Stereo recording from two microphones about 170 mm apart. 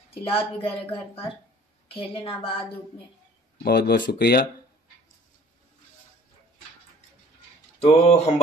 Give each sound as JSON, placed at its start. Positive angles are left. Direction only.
{"t": 0.2, "sound": "a woman's voice", "side_deg": 35}
{"t": 3.6, "sound": "speech", "side_deg": 70}
{"t": 7.8, "sound": "a woman's voice", "side_deg": 40}